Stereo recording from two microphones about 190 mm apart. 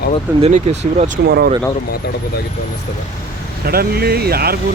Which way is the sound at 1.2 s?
60° right (ahead or behind).